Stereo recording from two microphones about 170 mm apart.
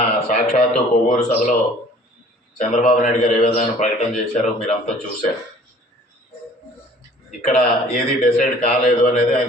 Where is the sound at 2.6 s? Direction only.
45° left (ahead or behind).